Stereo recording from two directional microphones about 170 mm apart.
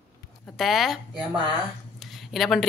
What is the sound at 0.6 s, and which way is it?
Speech, centre (ahead or behind).